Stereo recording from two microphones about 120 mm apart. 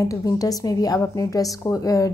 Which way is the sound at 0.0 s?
30° left (ahead or behind).